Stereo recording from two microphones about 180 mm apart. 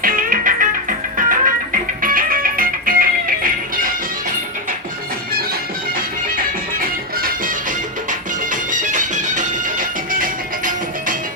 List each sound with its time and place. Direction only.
0.0 s music: 50° right (ahead or behind)
6.3 s music: 50° right (ahead or behind)
8.7 s music: 45° right (ahead or behind)